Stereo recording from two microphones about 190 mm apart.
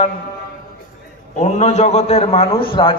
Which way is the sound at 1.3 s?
40° left (ahead or behind).